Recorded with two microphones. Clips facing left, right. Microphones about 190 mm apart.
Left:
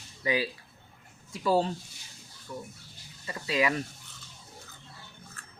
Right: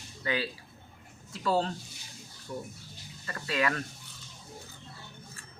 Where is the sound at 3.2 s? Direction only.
10° left (ahead or behind).